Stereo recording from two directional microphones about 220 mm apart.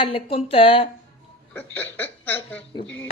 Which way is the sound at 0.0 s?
25° left (ahead or behind).